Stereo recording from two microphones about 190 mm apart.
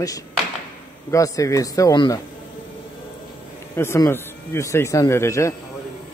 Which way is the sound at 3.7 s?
15° left (ahead or behind).